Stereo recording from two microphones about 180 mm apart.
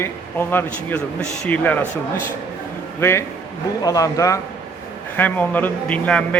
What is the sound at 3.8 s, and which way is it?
A man's voice, 20° left (ahead or behind).